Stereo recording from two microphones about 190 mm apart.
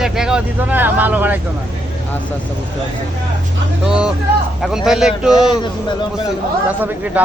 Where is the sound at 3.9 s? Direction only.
5° right (ahead or behind).